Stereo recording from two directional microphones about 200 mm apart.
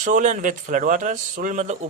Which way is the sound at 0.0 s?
40° right (ahead or behind).